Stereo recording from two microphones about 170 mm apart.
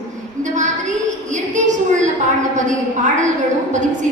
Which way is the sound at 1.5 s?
45° right (ahead or behind).